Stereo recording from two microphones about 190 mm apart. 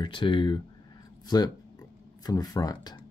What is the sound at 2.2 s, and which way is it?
Speech, 20° left (ahead or behind).